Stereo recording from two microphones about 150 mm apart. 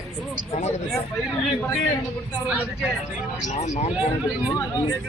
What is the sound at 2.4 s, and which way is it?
Speech, 5° right (ahead or behind).